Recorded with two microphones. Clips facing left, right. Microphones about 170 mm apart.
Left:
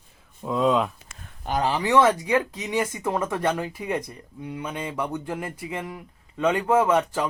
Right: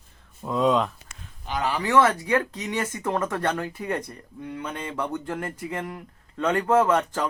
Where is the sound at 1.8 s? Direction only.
15° left (ahead or behind).